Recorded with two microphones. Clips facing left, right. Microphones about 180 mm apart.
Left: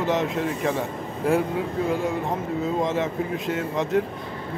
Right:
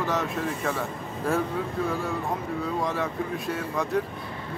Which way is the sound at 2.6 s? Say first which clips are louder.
Left 5 dB; 20° left (ahead or behind).